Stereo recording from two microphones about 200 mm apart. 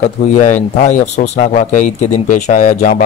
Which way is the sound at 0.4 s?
35° left (ahead or behind).